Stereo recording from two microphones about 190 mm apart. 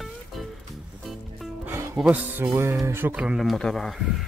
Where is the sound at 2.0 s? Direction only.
5° right (ahead or behind).